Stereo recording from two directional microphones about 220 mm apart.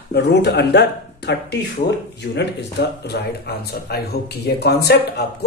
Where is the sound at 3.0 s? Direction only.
45° left (ahead or behind).